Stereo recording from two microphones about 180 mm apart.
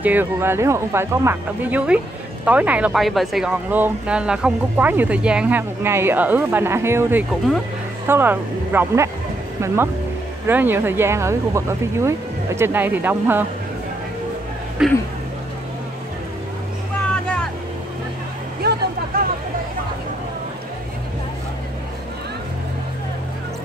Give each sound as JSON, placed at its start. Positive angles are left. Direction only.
{"t": 0.0, "sound": "speech", "side_deg": -10}
{"t": 10.4, "sound": "speech", "side_deg": -10}
{"t": 14.8, "sound": "speech", "side_deg": -5}
{"t": 17.1, "sound": "vehicle", "side_deg": 5}
{"t": 18.6, "sound": "vehicle", "side_deg": -65}